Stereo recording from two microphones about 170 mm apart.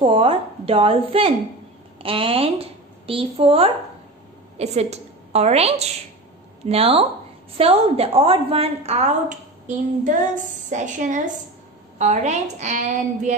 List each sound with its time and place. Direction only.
0.0 s a woman's voice: 30° right (ahead or behind)